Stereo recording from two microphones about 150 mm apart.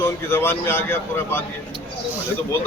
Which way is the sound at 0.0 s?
15° left (ahead or behind).